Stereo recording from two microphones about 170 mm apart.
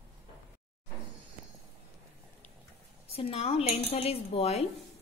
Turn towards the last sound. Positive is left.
turn(degrees=35)  # may be behind; listen again after turning